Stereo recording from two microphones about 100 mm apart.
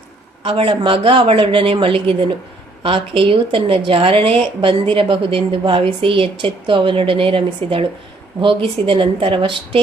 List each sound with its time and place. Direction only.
0.4 s a woman's voice: 60° right (ahead or behind)